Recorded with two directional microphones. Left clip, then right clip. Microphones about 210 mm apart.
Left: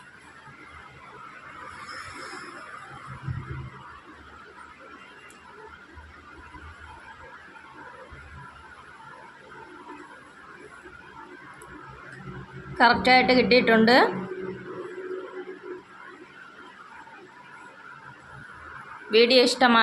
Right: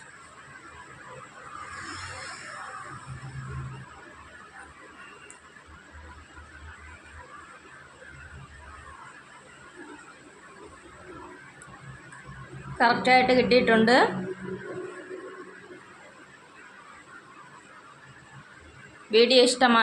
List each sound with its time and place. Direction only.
12.7 s a woman's voice: 10° left (ahead or behind)
19.1 s a woman's voice: centre (ahead or behind)